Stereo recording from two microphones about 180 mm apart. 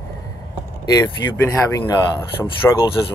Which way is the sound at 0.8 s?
20° left (ahead or behind).